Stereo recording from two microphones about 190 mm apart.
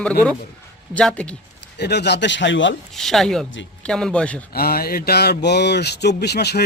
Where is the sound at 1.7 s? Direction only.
60° left (ahead or behind).